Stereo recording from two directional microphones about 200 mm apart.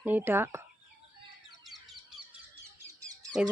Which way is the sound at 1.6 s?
Centre (ahead or behind).